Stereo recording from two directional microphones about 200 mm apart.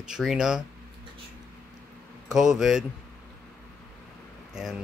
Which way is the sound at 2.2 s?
5° right (ahead or behind).